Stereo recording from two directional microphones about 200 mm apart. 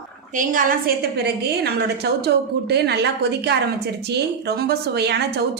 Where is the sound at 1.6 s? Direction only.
55° right (ahead or behind).